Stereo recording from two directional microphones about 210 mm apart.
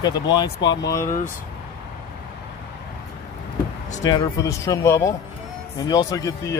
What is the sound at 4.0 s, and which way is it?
Speech, 15° left (ahead or behind).